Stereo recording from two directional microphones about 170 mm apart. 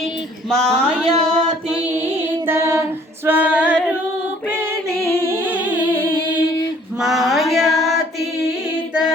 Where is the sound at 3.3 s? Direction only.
10° right (ahead or behind).